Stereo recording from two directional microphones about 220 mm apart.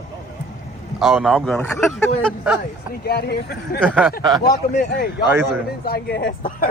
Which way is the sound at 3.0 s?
45° left (ahead or behind).